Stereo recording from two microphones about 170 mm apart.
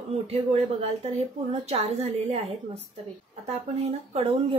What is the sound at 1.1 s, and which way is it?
Speech, 40° right (ahead or behind).